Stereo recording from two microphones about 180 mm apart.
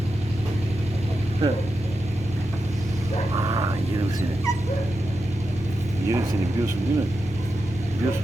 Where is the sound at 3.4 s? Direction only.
20° right (ahead or behind).